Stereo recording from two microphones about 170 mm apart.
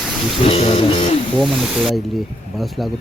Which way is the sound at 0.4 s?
35° left (ahead or behind).